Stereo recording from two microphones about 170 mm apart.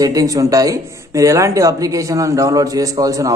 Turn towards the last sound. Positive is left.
turn(degrees=-20)  # may be behind; listen again after turning